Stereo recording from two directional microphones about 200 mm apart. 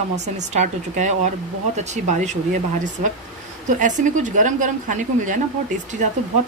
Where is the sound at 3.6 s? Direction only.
40° right (ahead or behind).